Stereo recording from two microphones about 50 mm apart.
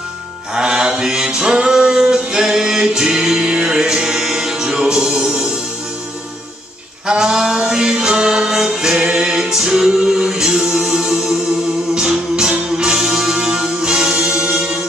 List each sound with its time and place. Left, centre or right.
0.6 s music: centre
7.1 s music: centre
8.9 s a capella: centre
12.1 s music: centre